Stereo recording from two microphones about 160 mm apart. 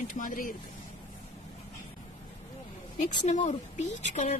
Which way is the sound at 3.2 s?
45° left (ahead or behind).